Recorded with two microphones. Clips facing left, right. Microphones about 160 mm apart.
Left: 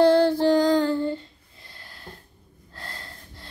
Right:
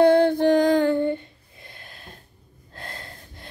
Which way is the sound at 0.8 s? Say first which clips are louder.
Right 3 dB; 60° right (ahead or behind).